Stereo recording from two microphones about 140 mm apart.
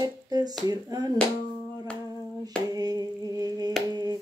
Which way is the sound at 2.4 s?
25° right (ahead or behind).